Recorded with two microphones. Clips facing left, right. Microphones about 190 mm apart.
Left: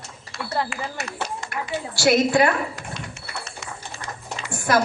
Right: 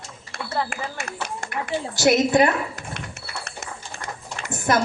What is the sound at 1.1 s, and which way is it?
Speech, 55° right (ahead or behind).